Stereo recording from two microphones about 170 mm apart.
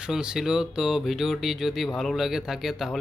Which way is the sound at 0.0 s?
5° right (ahead or behind).